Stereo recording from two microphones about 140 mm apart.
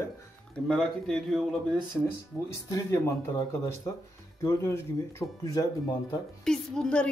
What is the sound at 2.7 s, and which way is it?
Speech, 25° left (ahead or behind).